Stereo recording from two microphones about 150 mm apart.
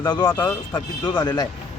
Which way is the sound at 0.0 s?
30° left (ahead or behind).